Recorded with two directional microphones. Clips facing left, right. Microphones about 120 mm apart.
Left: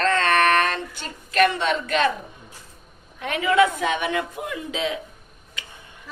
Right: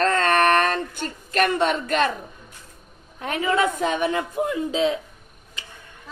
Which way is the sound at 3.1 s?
35° right (ahead or behind).